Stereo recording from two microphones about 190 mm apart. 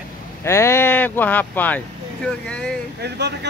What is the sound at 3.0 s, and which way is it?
Speech, 60° right (ahead or behind).